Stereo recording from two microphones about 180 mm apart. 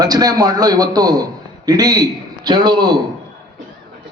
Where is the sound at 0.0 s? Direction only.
20° right (ahead or behind).